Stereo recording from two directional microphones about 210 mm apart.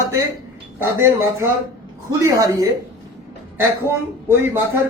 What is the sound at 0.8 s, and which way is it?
A man's voice, 10° right (ahead or behind).